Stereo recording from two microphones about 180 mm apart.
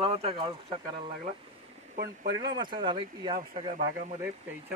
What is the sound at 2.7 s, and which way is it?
Speech, 25° right (ahead or behind).